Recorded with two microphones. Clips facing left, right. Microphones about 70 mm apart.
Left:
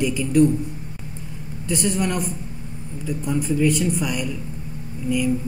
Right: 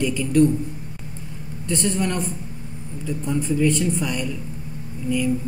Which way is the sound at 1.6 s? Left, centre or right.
Centre.